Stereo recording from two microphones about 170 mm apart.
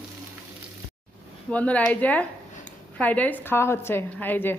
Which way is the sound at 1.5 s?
10° left (ahead or behind).